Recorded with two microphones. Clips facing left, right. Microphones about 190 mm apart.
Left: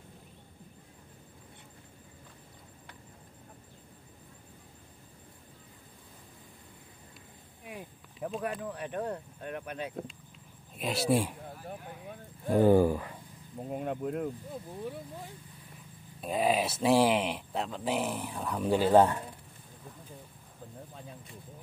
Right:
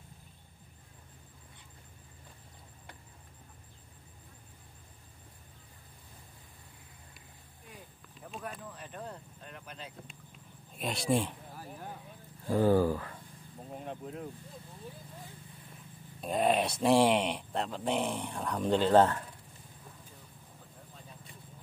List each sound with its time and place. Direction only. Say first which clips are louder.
7.6 s speech: left 8 dB; 70° left (ahead or behind)
10.8 s speech: left 2 dB; 5° left (ahead or behind)
12.4 s speech: left 3 dB; 20° left (ahead or behind)
13.7 s speech: left 8 dB; 60° left (ahead or behind)
16.2 s speech: even; centre (ahead or behind)